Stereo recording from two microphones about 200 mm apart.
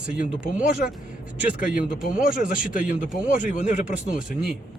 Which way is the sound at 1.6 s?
45° left (ahead or behind).